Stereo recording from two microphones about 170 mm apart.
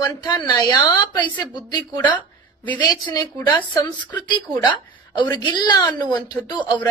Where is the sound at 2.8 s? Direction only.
25° left (ahead or behind).